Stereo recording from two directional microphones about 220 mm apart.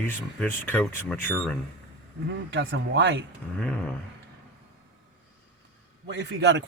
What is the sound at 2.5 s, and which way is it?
Speech, 55° right (ahead or behind).